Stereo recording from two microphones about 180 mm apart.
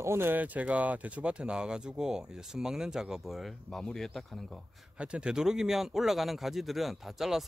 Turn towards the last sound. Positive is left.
turn(degrees=0)  # may be behind; listen again after turning